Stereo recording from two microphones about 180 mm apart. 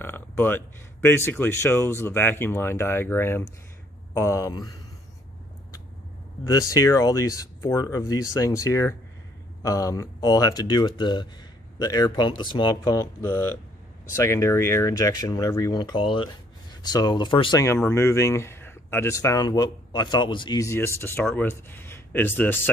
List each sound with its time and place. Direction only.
0.0 s speech: 10° left (ahead or behind)
6.4 s speech: 20° left (ahead or behind)